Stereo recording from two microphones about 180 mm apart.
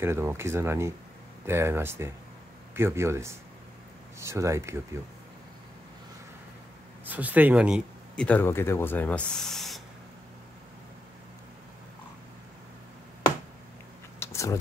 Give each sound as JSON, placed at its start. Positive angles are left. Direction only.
{"t": 0.0, "sound": "speech", "side_deg": -15}
{"t": 7.1, "sound": "speech", "side_deg": -10}
{"t": 8.2, "sound": "speech", "side_deg": 10}
{"t": 14.2, "sound": "a sound", "side_deg": 15}